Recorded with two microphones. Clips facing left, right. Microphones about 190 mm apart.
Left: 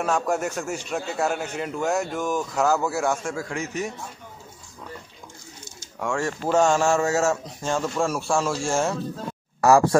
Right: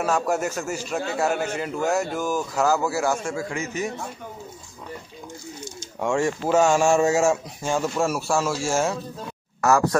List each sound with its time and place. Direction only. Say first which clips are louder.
0.0 s a man's voice: right 1 dB; 5° right (ahead or behind)
5.8 s a sound: right 4 dB; 20° right (ahead or behind)
6.4 s a man's voice: even; 5° right (ahead or behind)
9.6 s speech: left 3 dB; 30° left (ahead or behind)